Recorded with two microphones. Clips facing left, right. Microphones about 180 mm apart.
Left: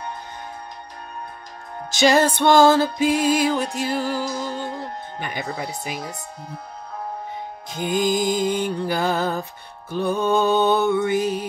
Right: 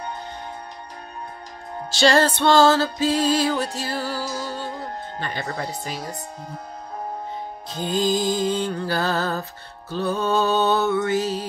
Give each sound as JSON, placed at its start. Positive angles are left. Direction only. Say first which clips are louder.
{"t": 2.0, "sound": "music", "louder": "left 1 dB", "side_deg": 10}
{"t": 7.7, "sound": "music", "louder": "left 1 dB", "side_deg": 15}